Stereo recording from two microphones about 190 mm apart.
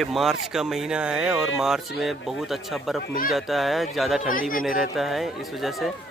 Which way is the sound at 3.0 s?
45° left (ahead or behind).